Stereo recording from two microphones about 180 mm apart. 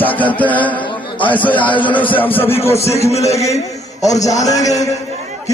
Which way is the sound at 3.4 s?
35° left (ahead or behind).